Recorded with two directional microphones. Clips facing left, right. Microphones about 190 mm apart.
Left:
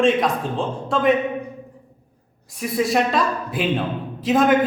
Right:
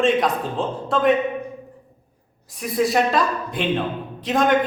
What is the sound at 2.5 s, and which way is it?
Speech, centre (ahead or behind).